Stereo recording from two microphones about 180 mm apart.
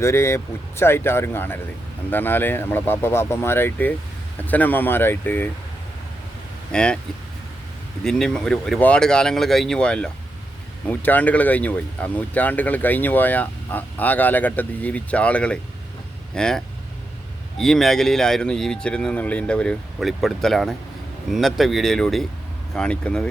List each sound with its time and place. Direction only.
0.0 s speech: 15° left (ahead or behind)
6.7 s speech: 5° left (ahead or behind)
8.0 s speech: 5° left (ahead or behind)